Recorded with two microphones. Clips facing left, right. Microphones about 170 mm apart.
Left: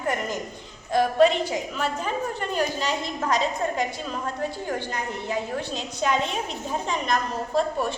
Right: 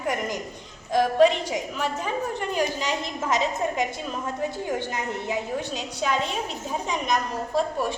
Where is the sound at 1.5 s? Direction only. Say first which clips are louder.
Even; 15° right (ahead or behind).